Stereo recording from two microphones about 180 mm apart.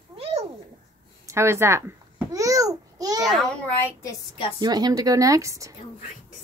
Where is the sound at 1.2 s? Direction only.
15° right (ahead or behind).